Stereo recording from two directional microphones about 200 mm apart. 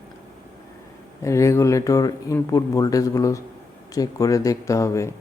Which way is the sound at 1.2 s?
15° left (ahead or behind).